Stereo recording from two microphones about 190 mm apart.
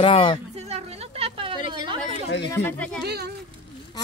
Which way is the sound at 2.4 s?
15° left (ahead or behind).